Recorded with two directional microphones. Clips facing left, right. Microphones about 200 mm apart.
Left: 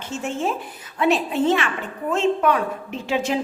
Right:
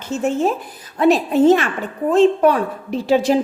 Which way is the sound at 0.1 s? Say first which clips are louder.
Right 7 dB; 40° right (ahead or behind).